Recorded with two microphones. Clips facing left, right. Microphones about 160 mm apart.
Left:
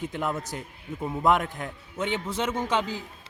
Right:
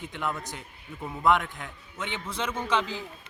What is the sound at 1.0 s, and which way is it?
Speech, 20° left (ahead or behind).